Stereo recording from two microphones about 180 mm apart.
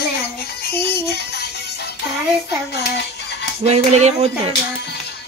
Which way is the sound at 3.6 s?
35° right (ahead or behind).